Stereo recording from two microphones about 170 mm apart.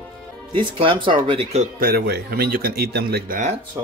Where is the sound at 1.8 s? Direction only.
65° right (ahead or behind).